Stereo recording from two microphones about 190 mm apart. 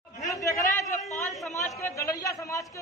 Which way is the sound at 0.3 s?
15° left (ahead or behind).